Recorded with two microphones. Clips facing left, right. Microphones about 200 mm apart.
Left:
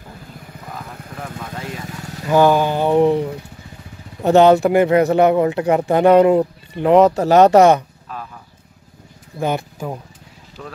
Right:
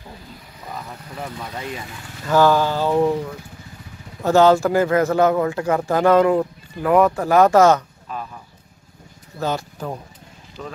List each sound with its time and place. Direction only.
2.2 s speech: 15° left (ahead or behind)
9.4 s speech: 10° left (ahead or behind)
10.6 s speech: centre (ahead or behind)